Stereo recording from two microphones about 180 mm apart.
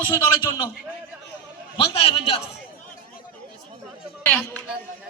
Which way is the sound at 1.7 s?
30° left (ahead or behind).